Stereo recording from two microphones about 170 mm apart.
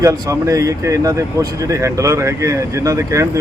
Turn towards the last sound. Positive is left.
turn(degrees=-20)  # may be behind; listen again after turning